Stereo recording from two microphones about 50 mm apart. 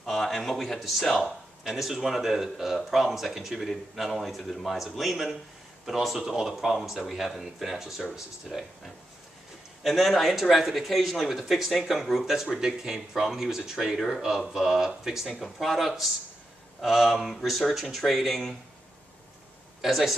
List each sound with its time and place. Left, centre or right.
0.0 s speech: centre
9.8 s speech: centre
19.8 s speech: centre